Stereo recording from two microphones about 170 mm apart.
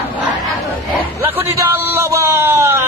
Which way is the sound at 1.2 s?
15° right (ahead or behind).